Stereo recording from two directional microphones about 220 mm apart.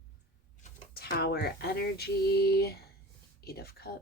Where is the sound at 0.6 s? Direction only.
45° left (ahead or behind).